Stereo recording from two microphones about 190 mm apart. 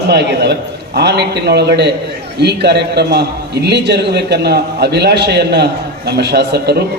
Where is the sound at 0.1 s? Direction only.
60° right (ahead or behind).